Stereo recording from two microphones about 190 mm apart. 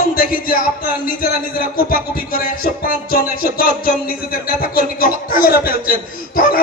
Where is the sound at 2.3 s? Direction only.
50° left (ahead or behind).